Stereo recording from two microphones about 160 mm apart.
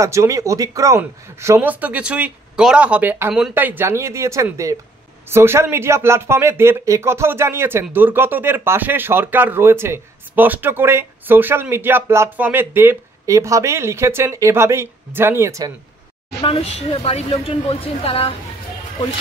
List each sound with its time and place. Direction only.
0.0 s speech: 20° right (ahead or behind)
16.4 s a woman's voice: 40° left (ahead or behind)